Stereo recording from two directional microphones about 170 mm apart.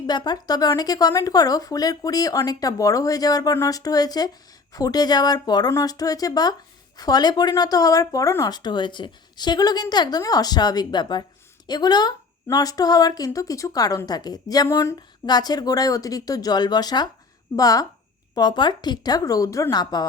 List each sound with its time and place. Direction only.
0.1 s speech: 25° left (ahead or behind)